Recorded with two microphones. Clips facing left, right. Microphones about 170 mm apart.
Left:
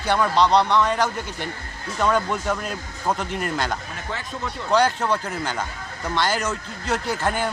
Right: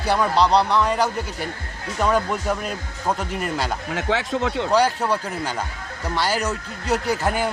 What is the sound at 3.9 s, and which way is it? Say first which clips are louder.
Speech: right 9 dB; 80° right.